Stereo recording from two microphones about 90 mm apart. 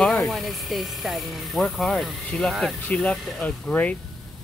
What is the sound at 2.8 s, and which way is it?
Speech, 15° left (ahead or behind).